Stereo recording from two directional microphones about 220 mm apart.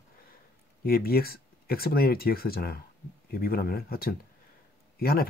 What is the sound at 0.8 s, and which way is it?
Speech, 45° left (ahead or behind).